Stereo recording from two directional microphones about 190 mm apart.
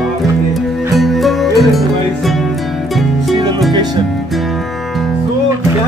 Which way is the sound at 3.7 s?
20° right (ahead or behind).